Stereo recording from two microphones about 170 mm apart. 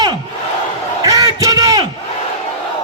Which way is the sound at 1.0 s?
20° right (ahead or behind).